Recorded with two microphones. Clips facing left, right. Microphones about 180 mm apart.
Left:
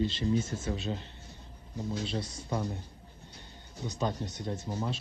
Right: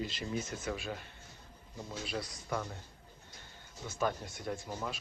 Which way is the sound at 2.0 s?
25° left (ahead or behind).